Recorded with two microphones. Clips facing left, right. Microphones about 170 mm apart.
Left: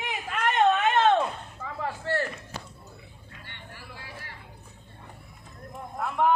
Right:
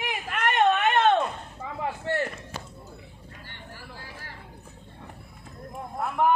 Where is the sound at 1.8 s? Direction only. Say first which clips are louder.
Right 1 dB; 20° right (ahead or behind).